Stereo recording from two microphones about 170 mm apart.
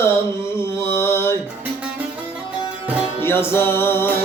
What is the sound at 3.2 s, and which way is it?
Music, 15° left (ahead or behind).